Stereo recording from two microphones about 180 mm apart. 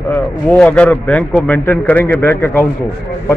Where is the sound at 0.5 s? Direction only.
5° left (ahead or behind).